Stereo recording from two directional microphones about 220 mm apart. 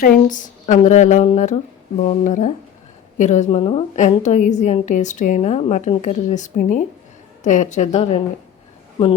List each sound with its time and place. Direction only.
0.0 s a woman's voice: 40° left (ahead or behind)